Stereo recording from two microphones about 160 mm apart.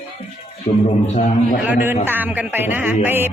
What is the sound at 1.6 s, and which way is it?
Speech, 10° right (ahead or behind).